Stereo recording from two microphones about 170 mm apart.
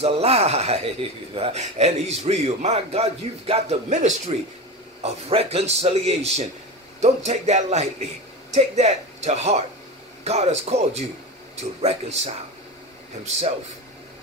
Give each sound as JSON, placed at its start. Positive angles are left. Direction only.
{"t": 0.0, "sound": "speech", "side_deg": -35}
{"t": 5.3, "sound": "speech", "side_deg": -35}